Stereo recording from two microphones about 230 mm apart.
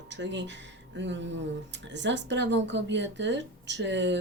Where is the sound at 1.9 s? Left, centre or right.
Right.